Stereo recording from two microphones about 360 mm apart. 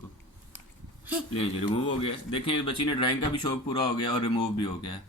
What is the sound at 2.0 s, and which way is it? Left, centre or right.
A man's voice, centre.